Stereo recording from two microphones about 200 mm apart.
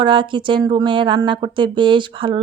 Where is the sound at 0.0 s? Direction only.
25° right (ahead or behind).